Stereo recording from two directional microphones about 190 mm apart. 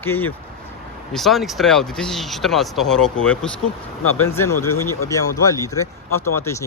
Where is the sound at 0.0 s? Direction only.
10° left (ahead or behind).